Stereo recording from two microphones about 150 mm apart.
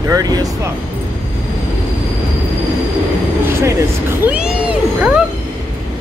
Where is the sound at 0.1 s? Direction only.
25° right (ahead or behind).